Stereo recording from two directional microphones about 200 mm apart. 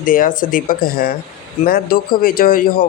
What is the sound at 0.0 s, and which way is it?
Speech, 45° left (ahead or behind).